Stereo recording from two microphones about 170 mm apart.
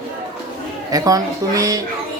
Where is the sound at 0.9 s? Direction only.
20° right (ahead or behind).